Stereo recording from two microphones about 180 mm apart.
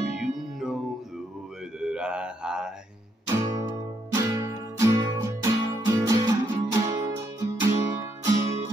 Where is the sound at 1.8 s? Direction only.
5° right (ahead or behind).